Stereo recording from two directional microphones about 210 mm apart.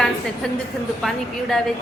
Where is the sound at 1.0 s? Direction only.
Centre (ahead or behind).